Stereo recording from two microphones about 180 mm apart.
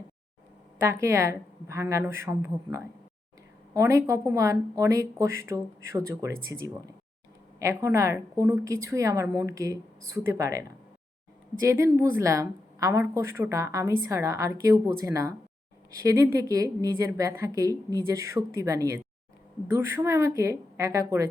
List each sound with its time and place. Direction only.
0.8 s a woman's voice: 15° right (ahead or behind)
11.6 s a woman's voice: 15° right (ahead or behind)